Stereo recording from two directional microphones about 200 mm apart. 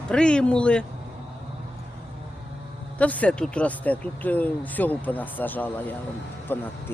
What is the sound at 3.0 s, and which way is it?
Speech, 5° left (ahead or behind).